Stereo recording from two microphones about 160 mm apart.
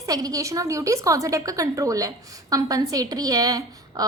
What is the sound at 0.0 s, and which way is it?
A woman's voice, 20° right (ahead or behind).